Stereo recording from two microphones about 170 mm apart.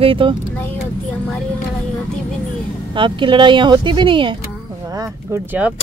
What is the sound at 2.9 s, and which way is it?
Speech, 30° right (ahead or behind).